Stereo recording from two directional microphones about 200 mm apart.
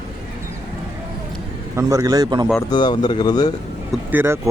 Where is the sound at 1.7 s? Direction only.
15° right (ahead or behind).